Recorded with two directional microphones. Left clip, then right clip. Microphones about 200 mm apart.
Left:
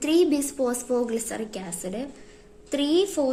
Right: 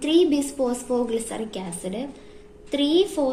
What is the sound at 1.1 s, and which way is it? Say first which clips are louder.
A woman's voice: right 2 dB; 45° left (ahead or behind).